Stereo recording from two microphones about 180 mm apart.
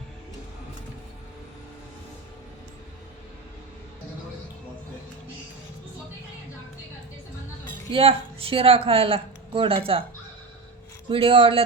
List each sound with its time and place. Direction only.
7.9 s speech: 30° right (ahead or behind)
11.1 s speech: 30° right (ahead or behind)